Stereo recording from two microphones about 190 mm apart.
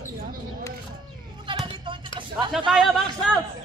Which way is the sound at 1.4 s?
25° right (ahead or behind).